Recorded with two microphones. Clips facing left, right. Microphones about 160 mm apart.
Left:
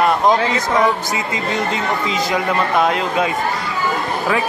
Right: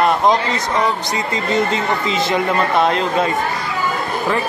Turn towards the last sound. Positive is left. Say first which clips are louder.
# right 1 dB
turn(degrees=5)  # may be behind; listen again after turning